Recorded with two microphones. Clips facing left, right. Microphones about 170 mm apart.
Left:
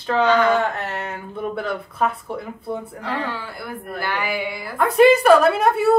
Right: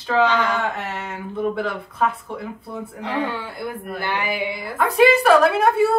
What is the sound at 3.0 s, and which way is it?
Speech, 20° right (ahead or behind).